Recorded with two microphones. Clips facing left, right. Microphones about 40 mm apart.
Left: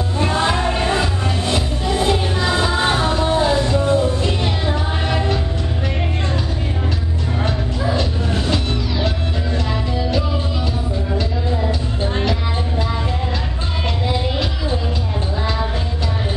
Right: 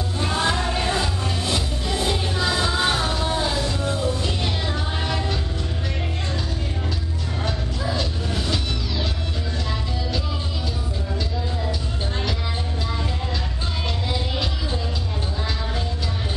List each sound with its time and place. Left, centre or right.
0.2 s music: centre
8.0 s music: left
11.1 s music: left